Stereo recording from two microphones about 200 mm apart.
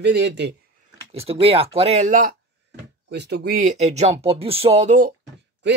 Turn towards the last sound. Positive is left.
turn(degrees=-60)  # may be behind; listen again after turning